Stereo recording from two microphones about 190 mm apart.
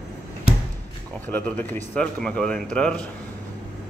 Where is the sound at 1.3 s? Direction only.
10° left (ahead or behind).